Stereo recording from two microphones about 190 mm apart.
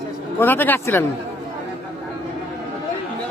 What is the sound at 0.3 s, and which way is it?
Speech, 10° left (ahead or behind).